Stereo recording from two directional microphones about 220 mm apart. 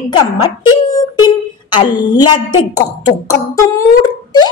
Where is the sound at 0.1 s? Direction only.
20° left (ahead or behind).